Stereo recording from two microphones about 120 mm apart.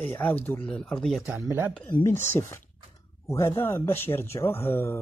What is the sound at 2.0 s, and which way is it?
Speech, 20° left (ahead or behind).